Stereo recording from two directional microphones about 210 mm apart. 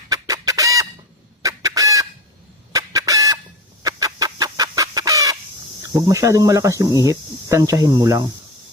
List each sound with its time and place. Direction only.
0.1 s chicken: 15° right (ahead or behind)
3.8 s fowl: 15° right (ahead or behind)
5.9 s speech: 15° right (ahead or behind)